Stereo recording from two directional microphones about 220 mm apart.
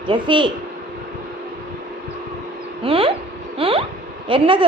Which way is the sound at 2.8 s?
25° right (ahead or behind).